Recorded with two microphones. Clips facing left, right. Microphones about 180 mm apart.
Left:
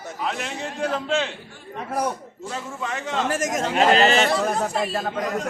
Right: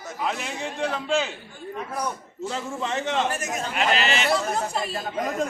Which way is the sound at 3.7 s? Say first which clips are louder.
Left 7 dB; 40° left (ahead or behind).